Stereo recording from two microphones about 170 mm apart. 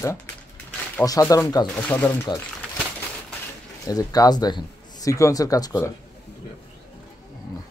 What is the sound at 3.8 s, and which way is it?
Speech, 20° left (ahead or behind).